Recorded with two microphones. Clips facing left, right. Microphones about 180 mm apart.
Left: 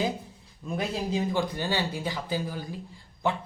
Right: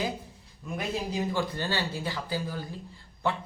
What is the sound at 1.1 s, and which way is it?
Speech, 15° left (ahead or behind).